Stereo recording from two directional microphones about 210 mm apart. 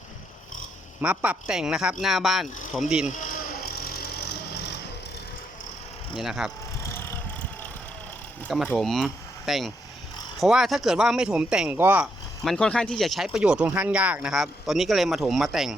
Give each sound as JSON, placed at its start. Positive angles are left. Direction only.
{"t": 1.0, "sound": "speech", "side_deg": -5}
{"t": 3.6, "sound": "a sound", "side_deg": 45}
{"t": 6.1, "sound": "speech", "side_deg": 0}
{"t": 8.4, "sound": "speech", "side_deg": 0}
{"t": 12.5, "sound": "speech", "side_deg": 5}